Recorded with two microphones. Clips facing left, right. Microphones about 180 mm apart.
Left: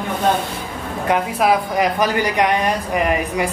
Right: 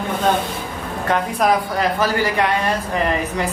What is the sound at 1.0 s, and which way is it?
A woman's voice, 10° left (ahead or behind).